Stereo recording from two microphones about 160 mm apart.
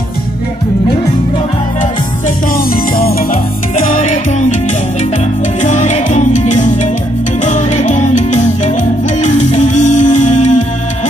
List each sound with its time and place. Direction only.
1.8 s music: 60° left (ahead or behind)
3.8 s music: 55° left (ahead or behind)
5.6 s music: 50° left (ahead or behind)